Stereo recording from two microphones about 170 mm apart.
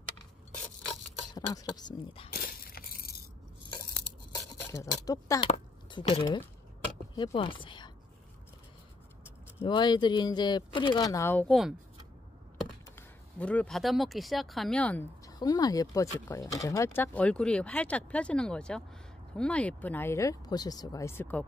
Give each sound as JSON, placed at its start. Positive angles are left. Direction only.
{"t": 1.3, "sound": "speech", "side_deg": 25}
{"t": 2.3, "sound": "a sound", "side_deg": 60}
{"t": 4.6, "sound": "speech", "side_deg": 15}
{"t": 5.9, "sound": "speech", "side_deg": 30}
{"t": 9.6, "sound": "speech", "side_deg": 30}
{"t": 11.4, "sound": "speech", "side_deg": 0}
{"t": 12.9, "sound": "speech", "side_deg": 10}
{"t": 15.2, "sound": "speech", "side_deg": 25}